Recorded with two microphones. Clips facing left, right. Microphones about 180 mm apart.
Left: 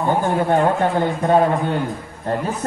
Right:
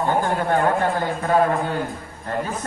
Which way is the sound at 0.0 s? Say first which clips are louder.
Left 3 dB; 15° left (ahead or behind).